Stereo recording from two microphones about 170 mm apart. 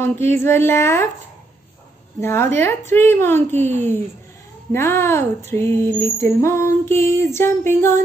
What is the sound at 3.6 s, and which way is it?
Speech, 40° right (ahead or behind).